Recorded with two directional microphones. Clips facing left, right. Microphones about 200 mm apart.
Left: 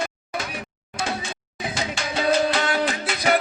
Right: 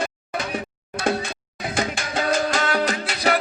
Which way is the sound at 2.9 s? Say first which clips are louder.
Right 1 dB; 40° right (ahead or behind).